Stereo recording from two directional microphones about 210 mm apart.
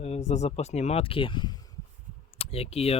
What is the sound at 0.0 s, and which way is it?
Speech, 30° left (ahead or behind).